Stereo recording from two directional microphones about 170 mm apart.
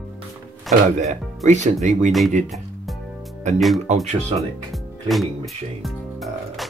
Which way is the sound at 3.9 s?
40° right (ahead or behind).